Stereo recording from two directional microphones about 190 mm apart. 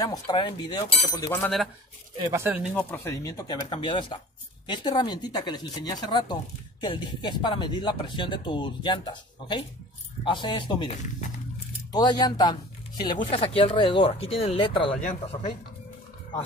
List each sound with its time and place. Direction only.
0.0 s speech: 20° left (ahead or behind); by 1.7 s 5° left (ahead or behind)
2.3 s speech: 10° right (ahead or behind)
2.9 s speech: 10° left (ahead or behind)
11.9 s speech: 20° left (ahead or behind)